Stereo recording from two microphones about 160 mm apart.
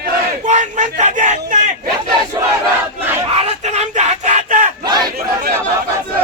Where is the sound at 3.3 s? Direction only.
45° right (ahead or behind).